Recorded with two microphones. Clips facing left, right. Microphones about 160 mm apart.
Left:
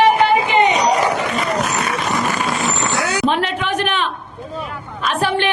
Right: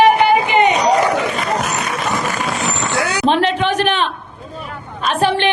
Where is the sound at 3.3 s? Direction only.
30° right (ahead or behind).